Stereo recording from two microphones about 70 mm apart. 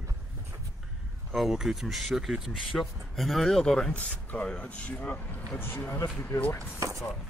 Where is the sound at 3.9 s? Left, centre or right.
Left.